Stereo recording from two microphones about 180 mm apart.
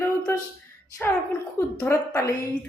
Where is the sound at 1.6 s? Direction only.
15° left (ahead or behind).